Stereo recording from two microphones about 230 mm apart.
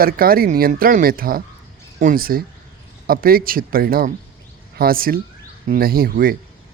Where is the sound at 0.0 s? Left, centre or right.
Right.